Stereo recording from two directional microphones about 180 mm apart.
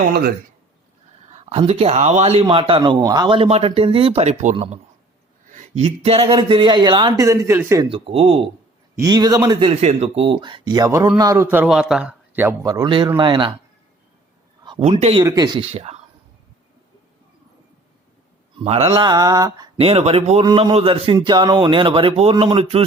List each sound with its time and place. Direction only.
1.5 s speech: 35° right (ahead or behind); by 7.9 s 15° right (ahead or behind)
7.9 s speech: 30° right (ahead or behind)
9.0 s a man's voice: 20° right (ahead or behind)
12.6 s speech: 20° right (ahead or behind)
14.8 s speech: 35° right (ahead or behind)
15.2 s speech: 20° right (ahead or behind)
15.7 s speech: 35° right (ahead or behind)
18.6 s speech: 35° right (ahead or behind); by 19.6 s 20° right (ahead or behind)
19.8 s speech: 35° right (ahead or behind)